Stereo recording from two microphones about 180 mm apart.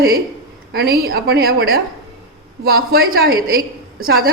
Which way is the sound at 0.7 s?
60° right (ahead or behind).